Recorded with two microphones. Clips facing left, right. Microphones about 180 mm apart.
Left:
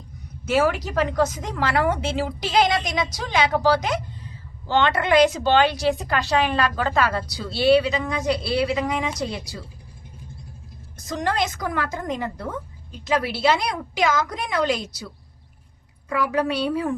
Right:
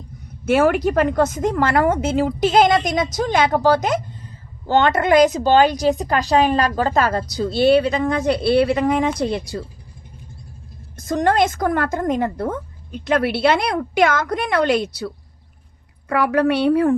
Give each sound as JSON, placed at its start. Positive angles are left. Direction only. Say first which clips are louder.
{"t": 0.4, "sound": "a woman's voice", "louder": "right 5 dB", "side_deg": -60}
{"t": 10.9, "sound": "a woman's voice", "louder": "right 7 dB", "side_deg": -50}